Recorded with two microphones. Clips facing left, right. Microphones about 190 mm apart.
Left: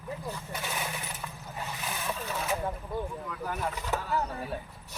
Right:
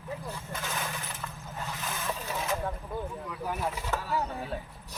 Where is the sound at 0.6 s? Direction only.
15° left (ahead or behind).